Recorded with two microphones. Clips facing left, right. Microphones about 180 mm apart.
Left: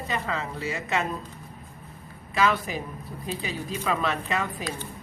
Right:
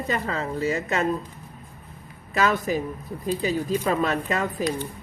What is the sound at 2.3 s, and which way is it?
Speech, 45° right (ahead or behind).